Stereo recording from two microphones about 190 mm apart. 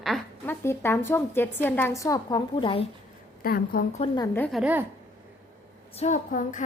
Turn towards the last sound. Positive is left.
turn(degrees=40)  # may be behind; listen again after turning